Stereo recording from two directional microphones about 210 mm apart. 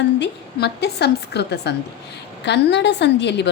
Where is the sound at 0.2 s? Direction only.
50° left (ahead or behind).